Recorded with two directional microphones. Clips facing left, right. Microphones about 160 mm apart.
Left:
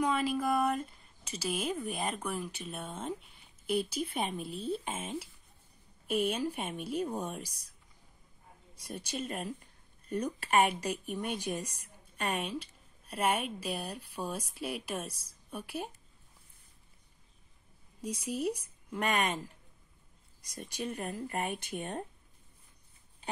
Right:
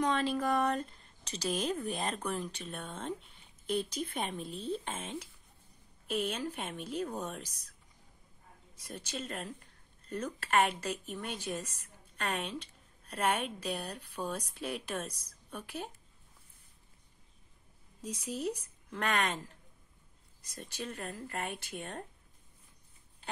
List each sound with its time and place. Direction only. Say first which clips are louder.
0.0 s a woman's voice: even; 10° left (ahead or behind)
8.8 s a woman's voice: left 3 dB; 10° left (ahead or behind)
18.0 s a woman's voice: left 3 dB; 10° left (ahead or behind)
20.4 s a woman's voice: left 4 dB; 15° left (ahead or behind)